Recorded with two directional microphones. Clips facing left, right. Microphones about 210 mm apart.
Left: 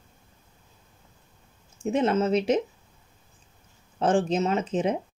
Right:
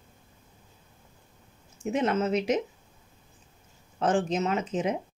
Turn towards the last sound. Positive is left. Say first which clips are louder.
# left 3 dB
turn(degrees=30)  # may be behind; listen again after turning